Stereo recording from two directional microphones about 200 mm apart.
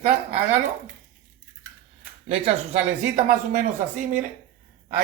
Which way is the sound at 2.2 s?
30° right (ahead or behind).